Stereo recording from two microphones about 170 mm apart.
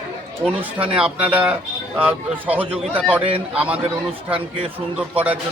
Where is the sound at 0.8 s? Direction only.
5° right (ahead or behind).